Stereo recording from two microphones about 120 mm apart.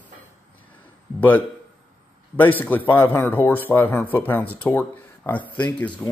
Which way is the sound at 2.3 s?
15° left (ahead or behind).